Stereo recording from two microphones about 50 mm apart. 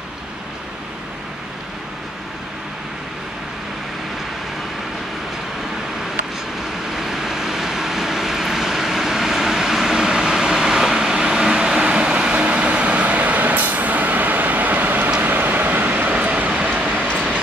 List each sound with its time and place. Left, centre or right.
7.0 s vehicle: centre; by 17.1 s right